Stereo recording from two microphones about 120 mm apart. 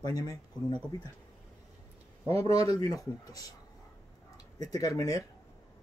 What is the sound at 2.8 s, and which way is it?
Speech, 30° left (ahead or behind).